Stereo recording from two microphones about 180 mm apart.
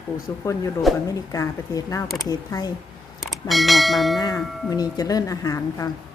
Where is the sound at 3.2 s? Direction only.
Centre (ahead or behind).